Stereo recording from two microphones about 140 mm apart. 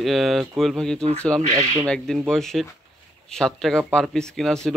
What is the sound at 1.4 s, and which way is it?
Speech, 55° right (ahead or behind).